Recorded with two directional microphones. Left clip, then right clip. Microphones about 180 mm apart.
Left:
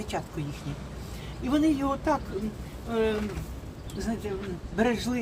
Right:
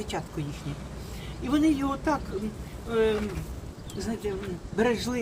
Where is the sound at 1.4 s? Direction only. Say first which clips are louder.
Even; 20° left (ahead or behind).